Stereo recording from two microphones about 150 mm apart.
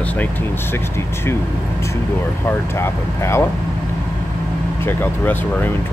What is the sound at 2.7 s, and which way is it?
Speech, 15° left (ahead or behind).